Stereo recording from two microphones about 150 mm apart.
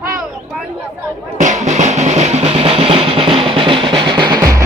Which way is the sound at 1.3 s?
55° right (ahead or behind).